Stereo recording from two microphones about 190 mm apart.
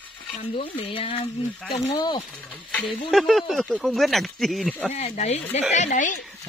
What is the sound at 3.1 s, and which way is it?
Speech, centre (ahead or behind).